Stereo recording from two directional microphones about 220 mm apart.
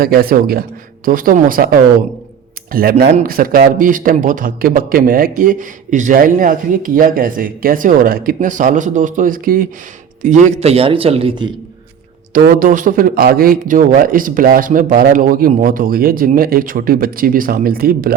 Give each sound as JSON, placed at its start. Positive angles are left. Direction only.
{"t": 0.0, "sound": "a man's voice", "side_deg": -40}
{"t": 3.0, "sound": "a man's voice", "side_deg": -40}
{"t": 12.3, "sound": "a man's voice", "side_deg": -40}